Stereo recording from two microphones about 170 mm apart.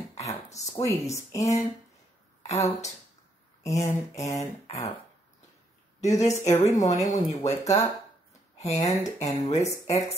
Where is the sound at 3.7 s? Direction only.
40° left (ahead or behind).